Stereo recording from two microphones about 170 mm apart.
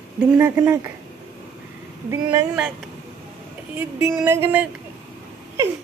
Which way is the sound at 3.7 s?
10° right (ahead or behind).